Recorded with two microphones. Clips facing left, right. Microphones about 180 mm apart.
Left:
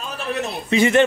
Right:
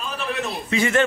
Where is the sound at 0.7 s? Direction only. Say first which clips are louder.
Left 5 dB; 20° left (ahead or behind).